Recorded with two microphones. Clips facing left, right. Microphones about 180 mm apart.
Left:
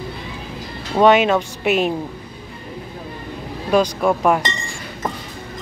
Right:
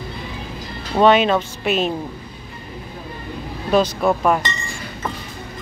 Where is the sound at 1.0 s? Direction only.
15° left (ahead or behind).